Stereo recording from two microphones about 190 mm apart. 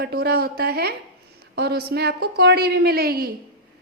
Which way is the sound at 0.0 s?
55° right (ahead or behind).